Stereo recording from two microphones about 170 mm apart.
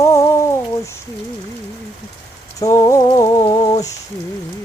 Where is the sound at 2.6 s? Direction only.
20° left (ahead or behind).